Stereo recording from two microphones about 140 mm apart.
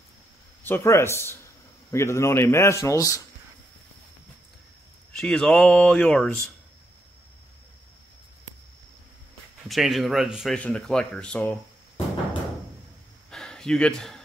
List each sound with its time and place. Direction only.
0.7 s speech: 20° left (ahead or behind)
5.2 s speech: 5° left (ahead or behind)
9.7 s speech: centre (ahead or behind)
13.3 s a sound: 5° left (ahead or behind)